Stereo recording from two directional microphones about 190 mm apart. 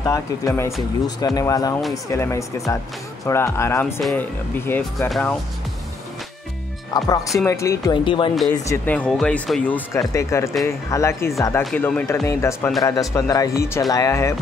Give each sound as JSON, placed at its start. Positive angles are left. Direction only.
{"t": 0.0, "sound": "speech", "side_deg": 15}
{"t": 6.9, "sound": "speech", "side_deg": 20}
{"t": 8.6, "sound": "speech", "side_deg": 10}
{"t": 12.3, "sound": "speech", "side_deg": 15}